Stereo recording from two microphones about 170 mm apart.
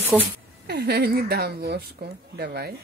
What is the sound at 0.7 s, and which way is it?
Speech, 70° right (ahead or behind).